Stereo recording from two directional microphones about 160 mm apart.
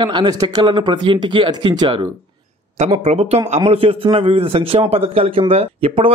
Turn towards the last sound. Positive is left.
turn(degrees=-35)  # may be behind; listen again after turning